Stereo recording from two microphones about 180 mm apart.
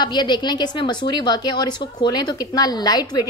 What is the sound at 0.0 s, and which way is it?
A woman's voice, 25° left (ahead or behind).